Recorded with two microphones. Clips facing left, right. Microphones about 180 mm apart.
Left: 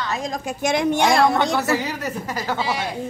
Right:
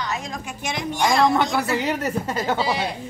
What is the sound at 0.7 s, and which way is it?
Speech, 70° left (ahead or behind).